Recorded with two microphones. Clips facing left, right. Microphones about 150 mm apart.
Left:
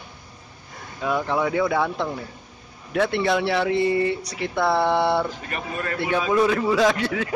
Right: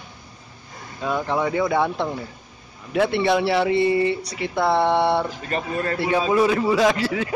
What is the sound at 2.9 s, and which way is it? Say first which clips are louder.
Speech: right 2 dB; centre (ahead or behind).